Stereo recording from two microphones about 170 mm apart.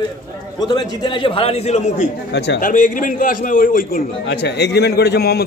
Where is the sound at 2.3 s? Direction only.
90° left.